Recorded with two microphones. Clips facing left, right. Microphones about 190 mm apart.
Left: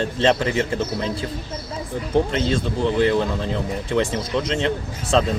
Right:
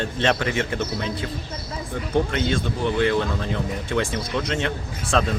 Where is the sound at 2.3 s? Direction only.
30° left (ahead or behind).